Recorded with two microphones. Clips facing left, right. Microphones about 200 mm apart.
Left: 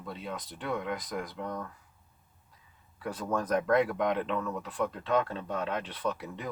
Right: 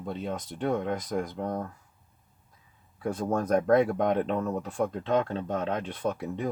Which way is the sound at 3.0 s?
45° right (ahead or behind).